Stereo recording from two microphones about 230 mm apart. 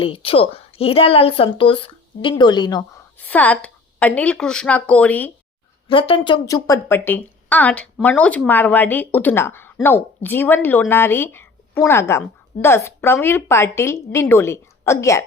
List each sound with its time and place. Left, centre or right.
0.0 s a woman's voice: left; by 5.3 s centre
5.9 s a woman's voice: left